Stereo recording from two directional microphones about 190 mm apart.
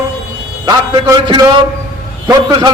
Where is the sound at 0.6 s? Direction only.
20° right (ahead or behind).